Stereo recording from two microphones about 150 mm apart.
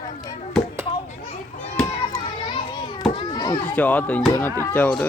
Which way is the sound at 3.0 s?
30° left (ahead or behind).